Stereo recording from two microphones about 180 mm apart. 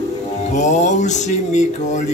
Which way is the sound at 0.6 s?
40° left (ahead or behind).